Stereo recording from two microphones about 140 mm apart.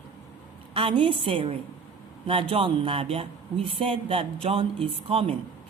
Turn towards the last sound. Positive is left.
turn(degrees=-40)  # may be behind; listen again after turning